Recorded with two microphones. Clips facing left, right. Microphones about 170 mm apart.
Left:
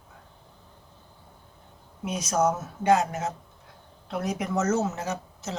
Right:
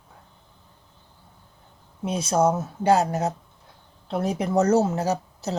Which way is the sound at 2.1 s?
30° right (ahead or behind).